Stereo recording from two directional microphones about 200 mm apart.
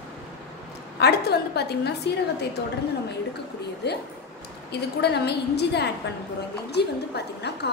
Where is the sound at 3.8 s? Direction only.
55° left (ahead or behind).